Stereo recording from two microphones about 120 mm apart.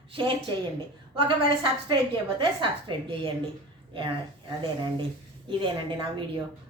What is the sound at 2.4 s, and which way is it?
A woman's voice, 45° right (ahead or behind).